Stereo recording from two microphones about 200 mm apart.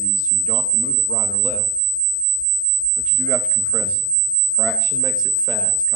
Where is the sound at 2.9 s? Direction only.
10° left (ahead or behind).